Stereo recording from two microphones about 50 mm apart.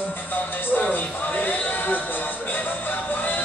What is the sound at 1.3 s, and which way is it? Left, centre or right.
Speech, left.